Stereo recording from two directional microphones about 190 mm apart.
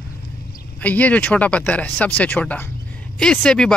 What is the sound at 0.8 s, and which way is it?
Speech, 10° left (ahead or behind).